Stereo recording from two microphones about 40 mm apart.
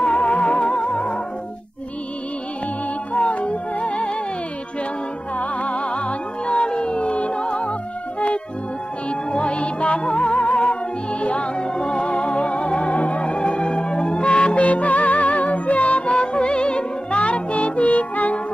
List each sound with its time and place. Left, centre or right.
0.0 s music: left
3.1 s music: left
5.3 s music: left
9.1 s music: left